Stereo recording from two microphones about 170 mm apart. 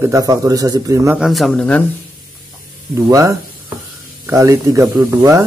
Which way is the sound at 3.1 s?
20° right (ahead or behind).